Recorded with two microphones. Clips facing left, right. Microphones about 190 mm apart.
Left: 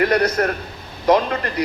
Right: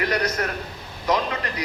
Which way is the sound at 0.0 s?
55° left (ahead or behind).